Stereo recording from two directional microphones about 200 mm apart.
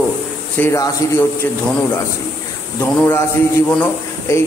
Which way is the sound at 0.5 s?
15° left (ahead or behind).